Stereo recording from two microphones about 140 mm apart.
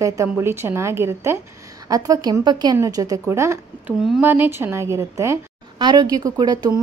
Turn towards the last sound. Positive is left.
turn(degrees=-30)  # may be behind; listen again after turning